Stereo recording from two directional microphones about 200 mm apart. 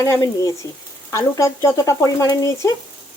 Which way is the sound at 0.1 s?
15° left (ahead or behind).